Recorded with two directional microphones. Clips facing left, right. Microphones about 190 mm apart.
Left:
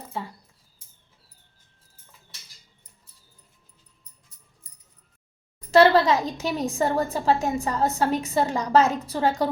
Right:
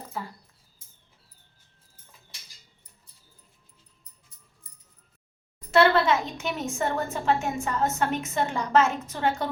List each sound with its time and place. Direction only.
0.1 s speech: 25° left (ahead or behind)
5.7 s a woman's voice: 35° left (ahead or behind)